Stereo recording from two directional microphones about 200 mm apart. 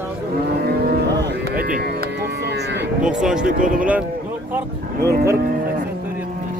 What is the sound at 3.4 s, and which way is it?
Speech, 40° right (ahead or behind).